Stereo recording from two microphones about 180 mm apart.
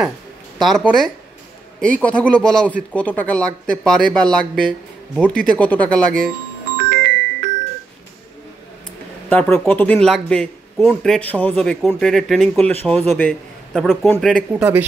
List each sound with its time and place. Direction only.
0.6 s a man's voice: centre (ahead or behind)
6.9 s music: 55° right (ahead or behind)
9.3 s a man's voice: 5° left (ahead or behind)
14.5 s a man's voice: 10° right (ahead or behind)